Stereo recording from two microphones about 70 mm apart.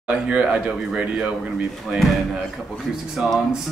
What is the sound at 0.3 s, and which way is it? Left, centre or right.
Speech, centre.